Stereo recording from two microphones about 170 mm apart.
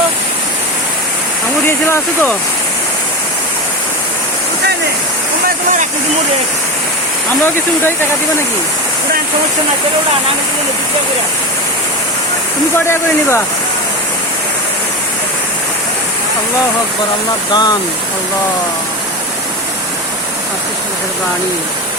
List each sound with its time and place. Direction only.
1.6 s speech: 10° left (ahead or behind)
12.9 s speech: 15° left (ahead or behind)
17.5 s speech: 25° left (ahead or behind)